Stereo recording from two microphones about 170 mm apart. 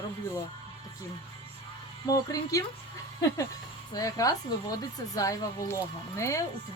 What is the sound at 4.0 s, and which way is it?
Speech, 20° left (ahead or behind).